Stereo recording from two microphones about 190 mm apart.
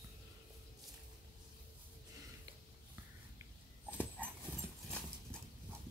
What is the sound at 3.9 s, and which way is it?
Dog, 10° left (ahead or behind).